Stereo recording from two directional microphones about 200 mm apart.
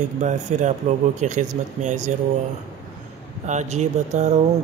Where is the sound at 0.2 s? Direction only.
35° right (ahead or behind).